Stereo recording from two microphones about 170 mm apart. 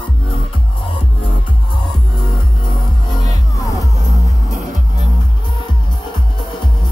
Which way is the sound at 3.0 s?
20° left (ahead or behind).